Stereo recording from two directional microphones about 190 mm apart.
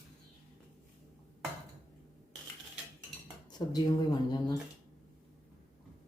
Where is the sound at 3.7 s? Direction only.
20° left (ahead or behind).